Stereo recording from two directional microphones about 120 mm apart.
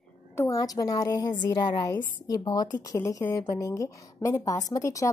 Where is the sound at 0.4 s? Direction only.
30° left (ahead or behind).